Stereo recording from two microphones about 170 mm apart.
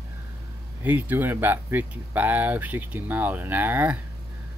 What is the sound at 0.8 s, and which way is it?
Speech, 10° right (ahead or behind).